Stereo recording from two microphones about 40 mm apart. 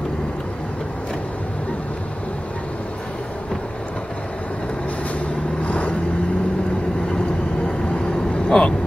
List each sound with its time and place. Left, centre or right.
5.6 s vehicle: left
7.6 s vehicle: left